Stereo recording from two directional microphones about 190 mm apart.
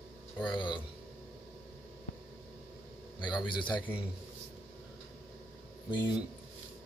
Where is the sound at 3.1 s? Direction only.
25° left (ahead or behind).